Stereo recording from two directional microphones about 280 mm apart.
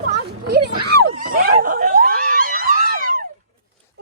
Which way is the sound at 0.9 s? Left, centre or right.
Right.